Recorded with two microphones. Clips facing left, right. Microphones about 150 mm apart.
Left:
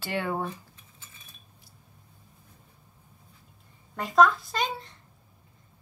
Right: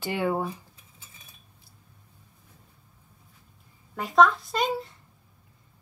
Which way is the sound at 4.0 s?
Centre (ahead or behind).